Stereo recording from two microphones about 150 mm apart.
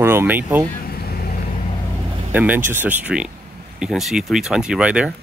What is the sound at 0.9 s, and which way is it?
Vehicle, 90° left.